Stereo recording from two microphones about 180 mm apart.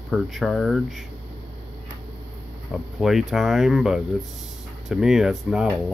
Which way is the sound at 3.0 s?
Centre (ahead or behind).